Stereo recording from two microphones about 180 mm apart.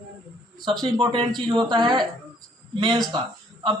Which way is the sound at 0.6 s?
25° right (ahead or behind).